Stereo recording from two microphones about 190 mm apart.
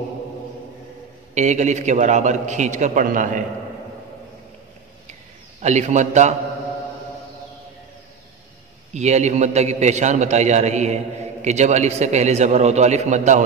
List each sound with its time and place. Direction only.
1.3 s a man's voice: 40° right (ahead or behind)
5.6 s a man's voice: 35° right (ahead or behind)
8.9 s a man's voice: 35° right (ahead or behind)